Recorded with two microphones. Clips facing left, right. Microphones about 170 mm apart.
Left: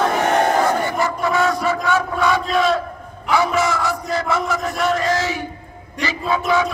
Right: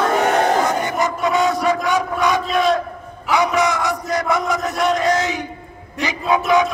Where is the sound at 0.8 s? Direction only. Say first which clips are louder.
Even; 20° right (ahead or behind).